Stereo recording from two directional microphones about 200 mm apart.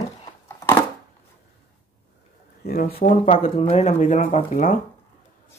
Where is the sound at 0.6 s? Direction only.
10° left (ahead or behind).